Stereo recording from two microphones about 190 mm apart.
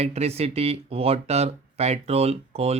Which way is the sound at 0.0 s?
35° right (ahead or behind).